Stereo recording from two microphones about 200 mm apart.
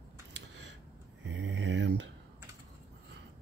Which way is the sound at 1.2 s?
65° right (ahead or behind).